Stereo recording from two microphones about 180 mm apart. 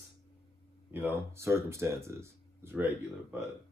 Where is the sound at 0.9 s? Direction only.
15° right (ahead or behind).